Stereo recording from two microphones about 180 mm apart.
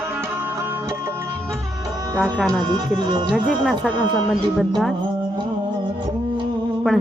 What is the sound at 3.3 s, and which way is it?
Speech, 5° right (ahead or behind).